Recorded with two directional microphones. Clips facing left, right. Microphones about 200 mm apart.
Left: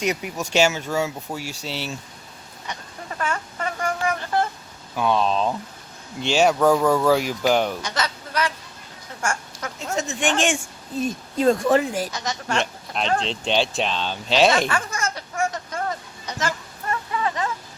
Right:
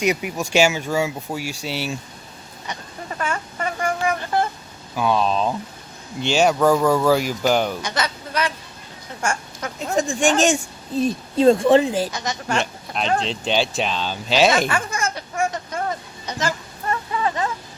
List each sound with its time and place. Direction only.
0.0 s speech: 10° right (ahead or behind)
3.2 s a sound: 10° right (ahead or behind)
4.9 s speech: 5° right (ahead or behind)
7.8 s speech: 15° right (ahead or behind)
9.9 s speech: 50° right (ahead or behind); by 12.1 s 30° right (ahead or behind)
12.1 s speech: 10° right (ahead or behind)
14.7 s baby laughter: 15° right (ahead or behind)
16.2 s a sound: 30° right (ahead or behind)